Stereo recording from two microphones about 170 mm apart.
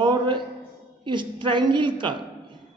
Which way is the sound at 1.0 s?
30° right (ahead or behind).